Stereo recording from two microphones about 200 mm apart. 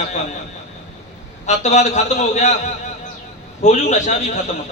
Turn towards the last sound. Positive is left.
turn(degrees=35)  # may be behind; listen again after turning